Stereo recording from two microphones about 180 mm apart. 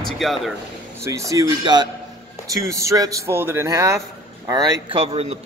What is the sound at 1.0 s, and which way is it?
A man's voice, 15° right (ahead or behind).